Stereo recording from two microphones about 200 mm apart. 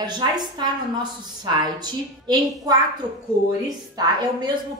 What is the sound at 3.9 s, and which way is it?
Speech, 20° right (ahead or behind).